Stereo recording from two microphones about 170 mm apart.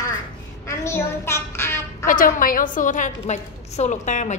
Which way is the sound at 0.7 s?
15° left (ahead or behind).